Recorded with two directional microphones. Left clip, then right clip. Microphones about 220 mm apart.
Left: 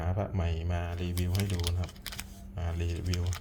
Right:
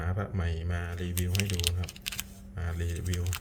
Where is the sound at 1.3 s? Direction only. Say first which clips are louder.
Right 8 dB; 15° right (ahead or behind).